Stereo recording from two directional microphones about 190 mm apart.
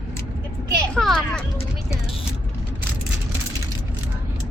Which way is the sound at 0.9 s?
Centre (ahead or behind).